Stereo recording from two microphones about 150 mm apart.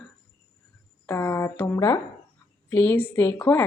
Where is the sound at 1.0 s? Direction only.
15° left (ahead or behind).